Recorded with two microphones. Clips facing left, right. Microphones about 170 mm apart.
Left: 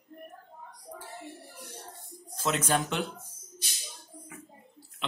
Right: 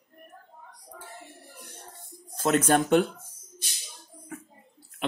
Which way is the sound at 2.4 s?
50° right (ahead or behind).